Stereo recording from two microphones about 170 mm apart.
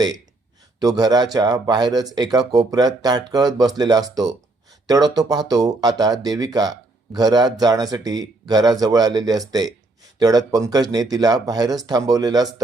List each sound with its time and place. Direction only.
0.8 s speech: 25° right (ahead or behind)